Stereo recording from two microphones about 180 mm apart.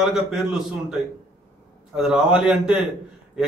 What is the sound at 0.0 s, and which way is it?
Speech, centre (ahead or behind).